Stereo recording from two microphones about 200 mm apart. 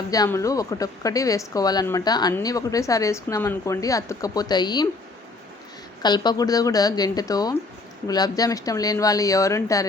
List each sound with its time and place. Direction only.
0.1 s a woman's voice: 15° left (ahead or behind)
6.0 s a woman's voice: 20° left (ahead or behind)